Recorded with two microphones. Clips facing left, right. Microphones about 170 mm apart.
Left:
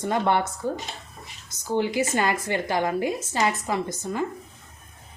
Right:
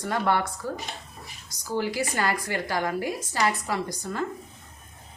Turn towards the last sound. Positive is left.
turn(degrees=20)  # may be behind; listen again after turning